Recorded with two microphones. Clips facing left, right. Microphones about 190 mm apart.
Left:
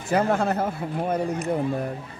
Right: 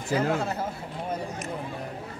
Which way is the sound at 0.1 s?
55° left (ahead or behind).